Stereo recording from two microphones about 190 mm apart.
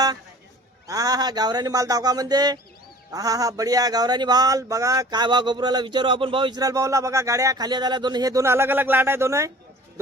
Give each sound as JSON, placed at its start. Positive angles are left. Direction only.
{"t": 0.9, "sound": "speech", "side_deg": -20}